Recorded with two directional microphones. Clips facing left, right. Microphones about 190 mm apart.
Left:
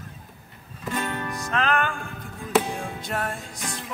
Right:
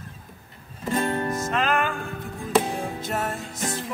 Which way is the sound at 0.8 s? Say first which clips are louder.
Right 5 dB; 30° right (ahead or behind).